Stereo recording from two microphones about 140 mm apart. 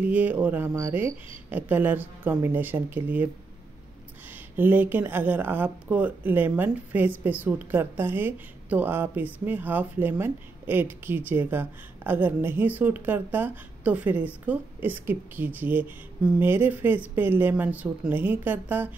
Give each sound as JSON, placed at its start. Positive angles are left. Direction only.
{"t": 0.0, "sound": "speech", "side_deg": -10}
{"t": 4.3, "sound": "speech", "side_deg": -15}